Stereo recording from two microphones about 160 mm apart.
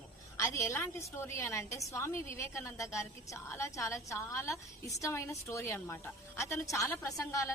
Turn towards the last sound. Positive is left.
turn(degrees=20)  # may be behind; listen again after turning